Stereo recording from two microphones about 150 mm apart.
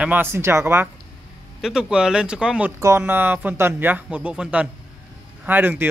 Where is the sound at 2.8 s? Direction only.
15° right (ahead or behind).